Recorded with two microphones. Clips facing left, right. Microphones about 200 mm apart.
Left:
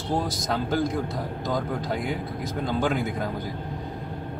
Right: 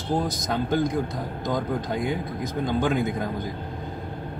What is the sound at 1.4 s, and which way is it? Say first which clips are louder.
Speech: right 2 dB; 20° right (ahead or behind).